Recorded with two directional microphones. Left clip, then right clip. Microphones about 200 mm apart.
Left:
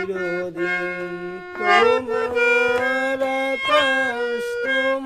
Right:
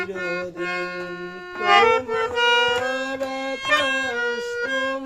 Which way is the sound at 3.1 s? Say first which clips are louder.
Left 5 dB; 55° left (ahead or behind).